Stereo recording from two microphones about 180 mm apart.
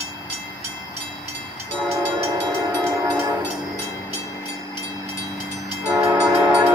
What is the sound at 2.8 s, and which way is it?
Train, 15° right (ahead or behind).